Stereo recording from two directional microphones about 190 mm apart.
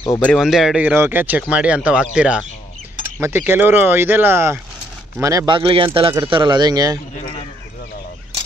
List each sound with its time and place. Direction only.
0.1 s a man's voice: 5° left (ahead or behind); by 7.0 s 20° right (ahead or behind)